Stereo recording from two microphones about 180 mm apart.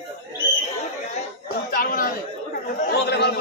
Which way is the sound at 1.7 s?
55° left (ahead or behind).